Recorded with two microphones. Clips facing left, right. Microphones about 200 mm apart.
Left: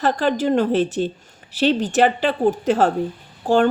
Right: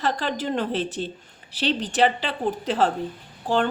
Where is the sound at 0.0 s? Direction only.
45° left (ahead or behind).